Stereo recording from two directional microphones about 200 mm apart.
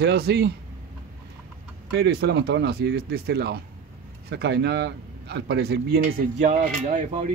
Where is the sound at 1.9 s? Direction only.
55° right (ahead or behind).